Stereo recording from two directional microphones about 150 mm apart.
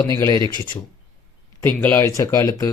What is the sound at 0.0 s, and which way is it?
Speech, 20° left (ahead or behind).